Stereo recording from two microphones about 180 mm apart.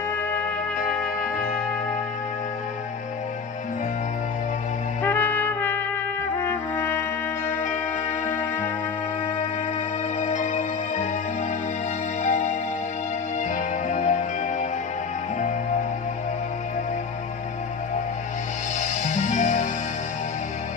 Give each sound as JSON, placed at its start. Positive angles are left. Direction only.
{"t": 5.0, "sound": "trumpet", "side_deg": 10}
{"t": 6.3, "sound": "music", "side_deg": 10}
{"t": 10.2, "sound": "music", "side_deg": 40}
{"t": 12.2, "sound": "music", "side_deg": 40}
{"t": 13.6, "sound": "music", "side_deg": 40}
{"t": 18.8, "sound": "music", "side_deg": 40}